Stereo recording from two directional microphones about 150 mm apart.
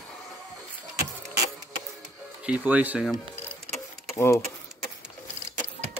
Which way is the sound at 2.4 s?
10° right (ahead or behind).